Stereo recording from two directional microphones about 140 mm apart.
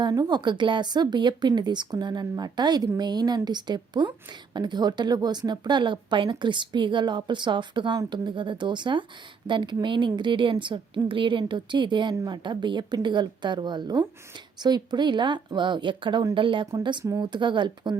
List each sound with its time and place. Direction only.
0.0 s speech: 30° right (ahead or behind)